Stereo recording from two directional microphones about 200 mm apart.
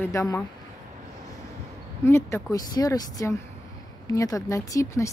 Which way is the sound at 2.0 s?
10° left (ahead or behind).